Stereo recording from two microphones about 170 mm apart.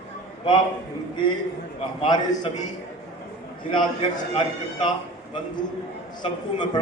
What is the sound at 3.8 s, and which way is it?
A man's voice, 30° left (ahead or behind).